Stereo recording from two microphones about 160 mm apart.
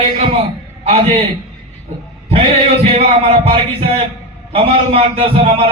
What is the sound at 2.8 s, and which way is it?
A man's voice, 40° right (ahead or behind).